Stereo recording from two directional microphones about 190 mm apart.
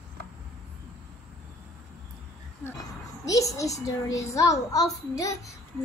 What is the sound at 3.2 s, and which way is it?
A child's voice, 15° left (ahead or behind).